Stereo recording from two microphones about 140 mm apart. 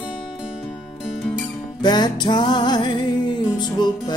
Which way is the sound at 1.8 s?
30° left (ahead or behind).